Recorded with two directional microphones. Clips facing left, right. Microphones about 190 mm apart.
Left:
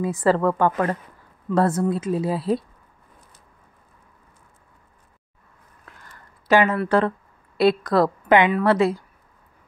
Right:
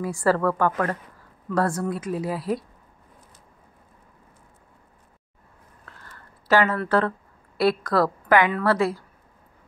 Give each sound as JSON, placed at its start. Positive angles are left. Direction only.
{"t": 0.0, "sound": "speech", "side_deg": 20}
{"t": 5.9, "sound": "speech", "side_deg": 15}